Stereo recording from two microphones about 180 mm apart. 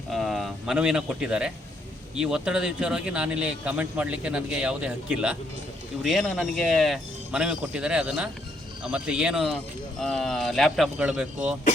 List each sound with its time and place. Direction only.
0.1 s speech: centre (ahead or behind)